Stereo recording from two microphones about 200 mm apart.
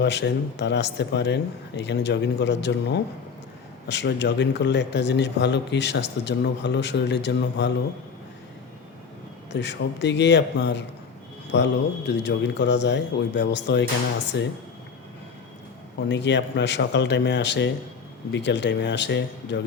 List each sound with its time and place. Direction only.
0.0 s a man's voice: 60° left (ahead or behind)
9.5 s a man's voice: 60° left (ahead or behind)
16.0 s a man's voice: 60° left (ahead or behind)